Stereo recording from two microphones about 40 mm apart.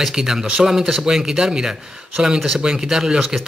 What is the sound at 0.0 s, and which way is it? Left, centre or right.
A man's voice, centre.